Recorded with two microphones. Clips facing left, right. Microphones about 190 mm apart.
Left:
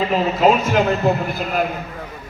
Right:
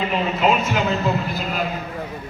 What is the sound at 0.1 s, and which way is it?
A man's voice, 45° left (ahead or behind).